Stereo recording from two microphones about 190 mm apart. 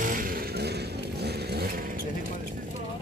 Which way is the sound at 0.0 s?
45° right (ahead or behind).